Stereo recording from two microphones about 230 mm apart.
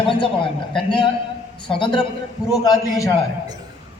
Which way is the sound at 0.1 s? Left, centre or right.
Left.